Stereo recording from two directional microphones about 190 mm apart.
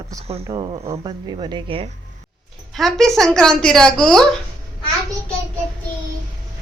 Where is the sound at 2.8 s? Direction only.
Centre (ahead or behind).